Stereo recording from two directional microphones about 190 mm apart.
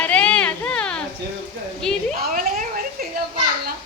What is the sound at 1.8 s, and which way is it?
Speech, 5° left (ahead or behind).